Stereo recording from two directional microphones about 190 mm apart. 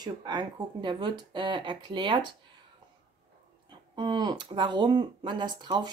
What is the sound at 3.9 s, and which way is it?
Speech, 25° right (ahead or behind).